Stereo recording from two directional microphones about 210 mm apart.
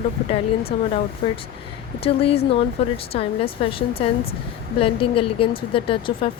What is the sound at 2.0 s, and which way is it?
Speech, 30° left (ahead or behind).